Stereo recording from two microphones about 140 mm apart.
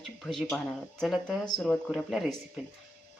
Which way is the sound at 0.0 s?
Centre (ahead or behind).